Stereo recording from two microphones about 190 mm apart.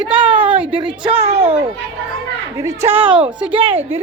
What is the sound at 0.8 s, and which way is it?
Speech, 25° right (ahead or behind).